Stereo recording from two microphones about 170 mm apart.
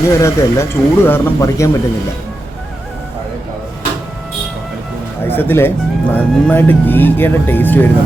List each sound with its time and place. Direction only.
0.1 s speech: 15° left (ahead or behind)
5.2 s speech: 10° left (ahead or behind)